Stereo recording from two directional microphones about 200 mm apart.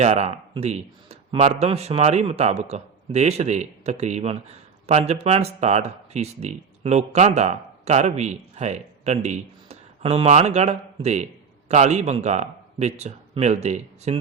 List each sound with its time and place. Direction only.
0.0 s speech: 30° right (ahead or behind)